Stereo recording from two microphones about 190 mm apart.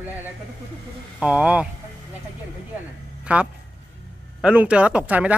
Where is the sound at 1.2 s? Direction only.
5° right (ahead or behind).